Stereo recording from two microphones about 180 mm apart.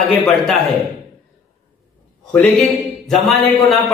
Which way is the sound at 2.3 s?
5° left (ahead or behind).